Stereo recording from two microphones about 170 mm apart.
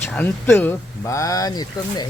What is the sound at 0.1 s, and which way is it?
Speech, 10° left (ahead or behind).